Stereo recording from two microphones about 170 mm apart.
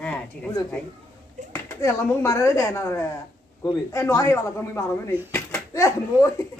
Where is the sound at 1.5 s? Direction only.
15° left (ahead or behind).